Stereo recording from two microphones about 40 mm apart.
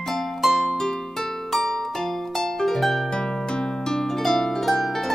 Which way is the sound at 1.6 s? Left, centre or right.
Centre.